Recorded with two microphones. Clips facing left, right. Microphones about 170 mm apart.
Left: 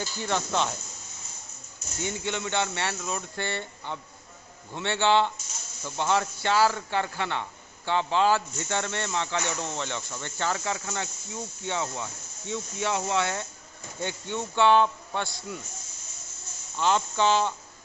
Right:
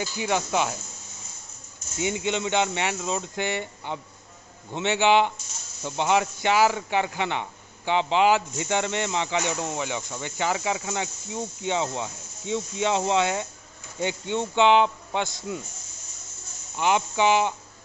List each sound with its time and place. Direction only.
0.0 s speech: 10° right (ahead or behind)
2.0 s a man's voice: 15° right (ahead or behind)
16.7 s speech: 15° right (ahead or behind)